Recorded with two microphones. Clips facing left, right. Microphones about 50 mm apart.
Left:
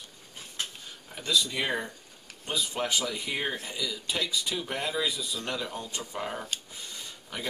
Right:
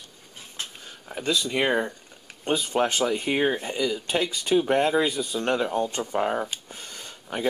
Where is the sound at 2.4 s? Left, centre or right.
Right.